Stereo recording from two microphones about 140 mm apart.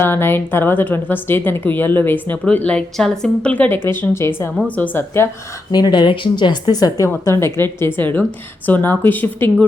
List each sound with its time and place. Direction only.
0.0 s speech: 15° left (ahead or behind)
5.7 s speech: 30° left (ahead or behind); by 9.6 s 10° left (ahead or behind)